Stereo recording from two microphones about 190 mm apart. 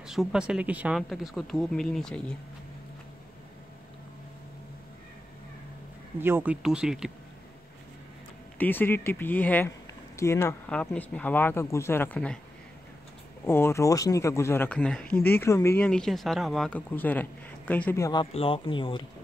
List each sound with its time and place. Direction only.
0.0 s speech: centre (ahead or behind)
6.1 s speech: 10° right (ahead or behind)
8.5 s speech: 10° left (ahead or behind)
13.5 s speech: 15° left (ahead or behind)
18.2 s speech: 30° left (ahead or behind)